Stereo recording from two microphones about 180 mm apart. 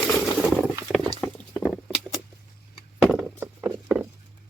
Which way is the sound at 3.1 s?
10° right (ahead or behind).